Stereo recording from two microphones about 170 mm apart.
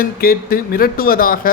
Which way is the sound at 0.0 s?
60° left (ahead or behind).